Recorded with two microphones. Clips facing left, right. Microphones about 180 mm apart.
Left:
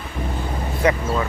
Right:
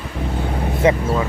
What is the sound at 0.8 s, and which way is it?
Speech, 25° right (ahead or behind).